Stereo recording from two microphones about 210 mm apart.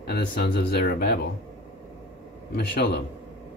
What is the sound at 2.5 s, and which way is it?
Speech, 50° left (ahead or behind).